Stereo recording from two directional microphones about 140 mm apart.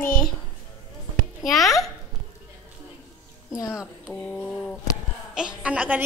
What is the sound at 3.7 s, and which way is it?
Speech, 5° right (ahead or behind).